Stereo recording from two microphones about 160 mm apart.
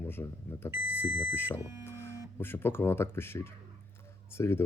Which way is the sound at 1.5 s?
20° right (ahead or behind).